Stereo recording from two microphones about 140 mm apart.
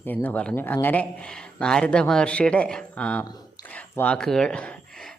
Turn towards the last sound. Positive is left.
turn(degrees=5)  # may be behind; listen again after turning